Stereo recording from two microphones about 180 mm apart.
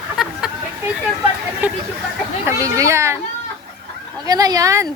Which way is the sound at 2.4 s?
15° right (ahead or behind).